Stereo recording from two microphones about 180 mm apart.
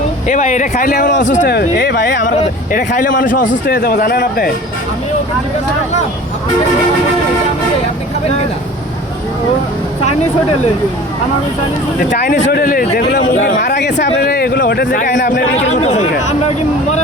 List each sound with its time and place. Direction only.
0.3 s speech: 40° left (ahead or behind)
1.1 s speech: 90° left
1.5 s speech: 70° left (ahead or behind)
2.4 s speech: 50° left (ahead or behind)
3.4 s speech: 80° left; by 4.5 s 55° left (ahead or behind)
12.1 s speech: 60° left (ahead or behind)
13.3 s speech: 80° left
14.2 s speech: 60° left (ahead or behind)
14.9 s speech: 45° left (ahead or behind)